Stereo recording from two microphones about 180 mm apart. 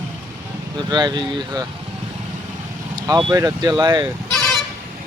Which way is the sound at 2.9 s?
20° right (ahead or behind).